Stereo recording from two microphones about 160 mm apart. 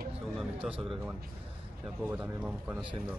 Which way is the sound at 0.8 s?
Centre (ahead or behind).